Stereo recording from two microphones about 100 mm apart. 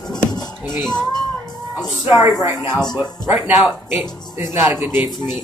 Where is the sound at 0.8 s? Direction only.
45° left (ahead or behind).